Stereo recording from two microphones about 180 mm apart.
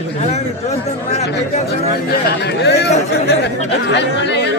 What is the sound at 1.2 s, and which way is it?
Speech, 60° left (ahead or behind).